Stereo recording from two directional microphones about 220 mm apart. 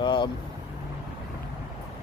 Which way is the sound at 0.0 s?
20° left (ahead or behind).